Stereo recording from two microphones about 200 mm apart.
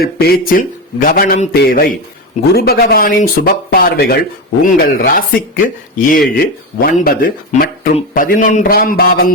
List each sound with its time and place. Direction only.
0.0 s speech: 50° left (ahead or behind)